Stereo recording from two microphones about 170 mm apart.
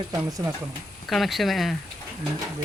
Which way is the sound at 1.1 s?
Centre (ahead or behind).